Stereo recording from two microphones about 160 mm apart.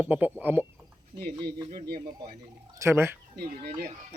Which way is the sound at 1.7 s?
65° right (ahead or behind).